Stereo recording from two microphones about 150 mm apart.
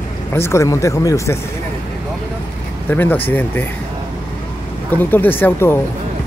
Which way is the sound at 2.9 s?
15° left (ahead or behind).